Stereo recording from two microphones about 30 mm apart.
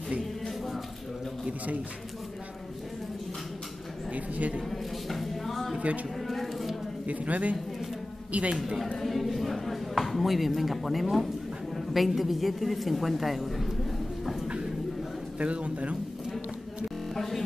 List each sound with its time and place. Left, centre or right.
4.1 s a woman's voice: right
4.6 s a sound: centre
7.1 s a man's voice: right
8.5 s speech: centre
9.0 s speech: centre
15.3 s a man's voice: right
17.1 s music: centre